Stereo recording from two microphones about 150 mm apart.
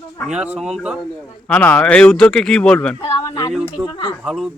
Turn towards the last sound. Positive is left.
turn(degrees=-5)  # may be behind; listen again after turning